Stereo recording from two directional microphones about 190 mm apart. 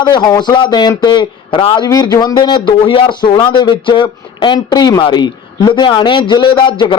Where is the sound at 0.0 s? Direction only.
20° left (ahead or behind).